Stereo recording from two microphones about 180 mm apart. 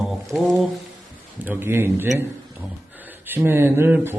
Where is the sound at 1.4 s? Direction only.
15° right (ahead or behind).